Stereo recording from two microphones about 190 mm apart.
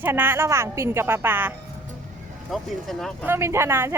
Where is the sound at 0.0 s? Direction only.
10° right (ahead or behind).